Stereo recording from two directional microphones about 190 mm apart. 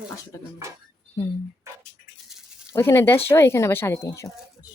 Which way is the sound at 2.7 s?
15° left (ahead or behind).